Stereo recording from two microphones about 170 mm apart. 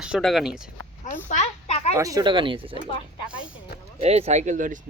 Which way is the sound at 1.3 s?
40° left (ahead or behind).